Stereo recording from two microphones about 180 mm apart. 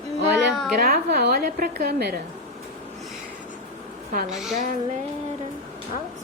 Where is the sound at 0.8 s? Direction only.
60° right (ahead or behind).